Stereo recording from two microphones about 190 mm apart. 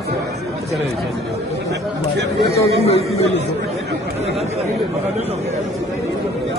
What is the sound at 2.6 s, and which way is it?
Speech, 35° left (ahead or behind).